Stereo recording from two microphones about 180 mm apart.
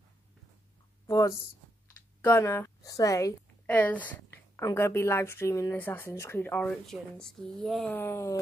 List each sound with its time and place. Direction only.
1.0 s a woman's voice: 20° left (ahead or behind)